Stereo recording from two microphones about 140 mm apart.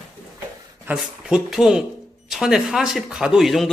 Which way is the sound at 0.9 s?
5° right (ahead or behind).